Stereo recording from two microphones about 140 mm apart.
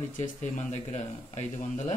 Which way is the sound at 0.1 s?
60° left (ahead or behind).